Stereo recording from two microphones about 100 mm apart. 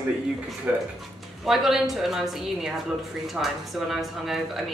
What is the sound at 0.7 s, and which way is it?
Speech, 15° right (ahead or behind).